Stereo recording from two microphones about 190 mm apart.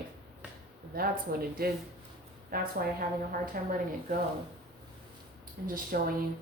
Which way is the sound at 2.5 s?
50° right (ahead or behind).